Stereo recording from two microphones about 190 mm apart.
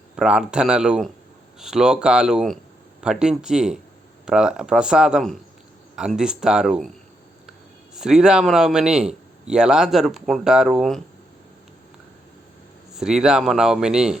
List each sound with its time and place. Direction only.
0.2 s speech: 5° right (ahead or behind)
7.9 s speech: 5° right (ahead or behind)
12.9 s speech: 5° right (ahead or behind)